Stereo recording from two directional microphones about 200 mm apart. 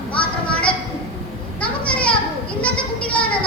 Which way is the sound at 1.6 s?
5° left (ahead or behind).